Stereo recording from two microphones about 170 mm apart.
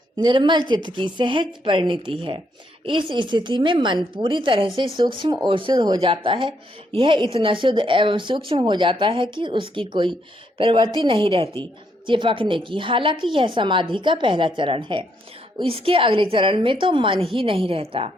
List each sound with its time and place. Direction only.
0.2 s a woman's voice: 25° right (ahead or behind)